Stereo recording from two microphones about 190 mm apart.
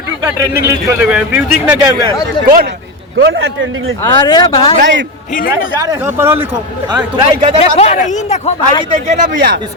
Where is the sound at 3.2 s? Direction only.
75° right (ahead or behind).